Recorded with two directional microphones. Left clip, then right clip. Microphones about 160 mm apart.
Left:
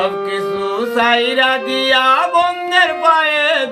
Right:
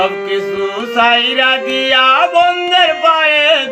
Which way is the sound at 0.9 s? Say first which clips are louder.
Right 3 dB; 20° left (ahead or behind).